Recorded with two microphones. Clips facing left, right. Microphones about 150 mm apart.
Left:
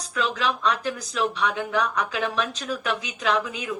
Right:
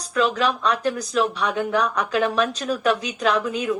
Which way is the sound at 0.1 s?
50° right (ahead or behind).